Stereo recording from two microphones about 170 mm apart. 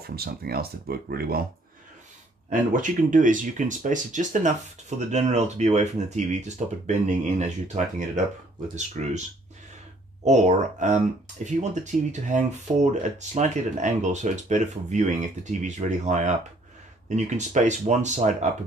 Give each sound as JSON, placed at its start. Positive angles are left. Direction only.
{"t": 0.0, "sound": "speech", "side_deg": -65}
{"t": 2.5, "sound": "speech", "side_deg": -50}
{"t": 10.2, "sound": "speech", "side_deg": -45}